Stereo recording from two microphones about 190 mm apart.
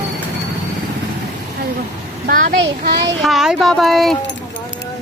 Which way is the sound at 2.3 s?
50° right (ahead or behind).